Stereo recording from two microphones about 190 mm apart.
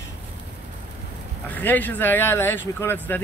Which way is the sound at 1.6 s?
10° left (ahead or behind).